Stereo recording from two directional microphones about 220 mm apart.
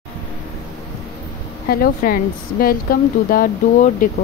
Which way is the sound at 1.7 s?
40° left (ahead or behind).